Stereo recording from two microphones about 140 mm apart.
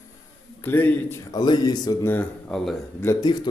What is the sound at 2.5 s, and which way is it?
Speech, 5° left (ahead or behind).